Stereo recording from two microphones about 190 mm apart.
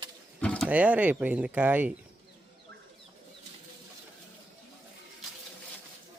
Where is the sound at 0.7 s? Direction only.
5° right (ahead or behind).